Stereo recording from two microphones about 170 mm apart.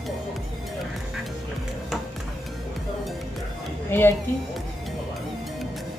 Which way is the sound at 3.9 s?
10° left (ahead or behind).